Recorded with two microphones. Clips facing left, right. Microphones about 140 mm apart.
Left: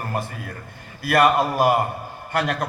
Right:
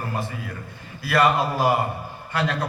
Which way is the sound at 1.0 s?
55° left (ahead or behind).